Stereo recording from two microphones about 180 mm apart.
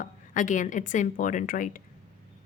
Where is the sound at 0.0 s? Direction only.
45° left (ahead or behind).